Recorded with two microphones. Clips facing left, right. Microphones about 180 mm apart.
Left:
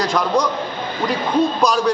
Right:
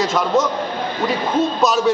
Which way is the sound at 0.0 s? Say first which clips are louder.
Right 1 dB; centre (ahead or behind).